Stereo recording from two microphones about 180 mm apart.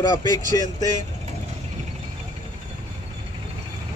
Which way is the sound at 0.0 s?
20° left (ahead or behind).